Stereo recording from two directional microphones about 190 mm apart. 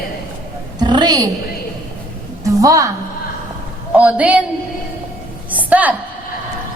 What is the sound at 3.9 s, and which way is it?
Speech, 10° right (ahead or behind).